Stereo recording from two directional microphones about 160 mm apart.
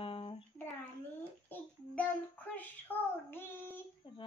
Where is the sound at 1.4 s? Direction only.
10° left (ahead or behind).